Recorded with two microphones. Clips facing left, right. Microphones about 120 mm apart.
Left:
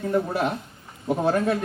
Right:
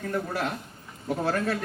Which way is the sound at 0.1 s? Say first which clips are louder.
Left 6 dB; 20° left (ahead or behind).